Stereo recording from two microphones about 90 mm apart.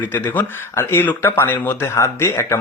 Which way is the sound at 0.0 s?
20° left (ahead or behind).